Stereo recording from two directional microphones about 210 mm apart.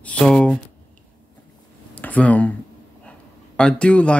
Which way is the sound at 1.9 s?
5° left (ahead or behind).